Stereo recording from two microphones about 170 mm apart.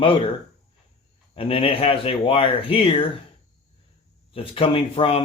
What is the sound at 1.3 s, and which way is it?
Speech, 35° left (ahead or behind).